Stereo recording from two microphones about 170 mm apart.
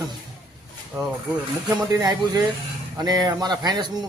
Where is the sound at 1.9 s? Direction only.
25° right (ahead or behind).